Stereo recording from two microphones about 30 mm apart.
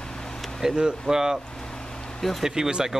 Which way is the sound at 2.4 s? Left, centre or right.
Centre.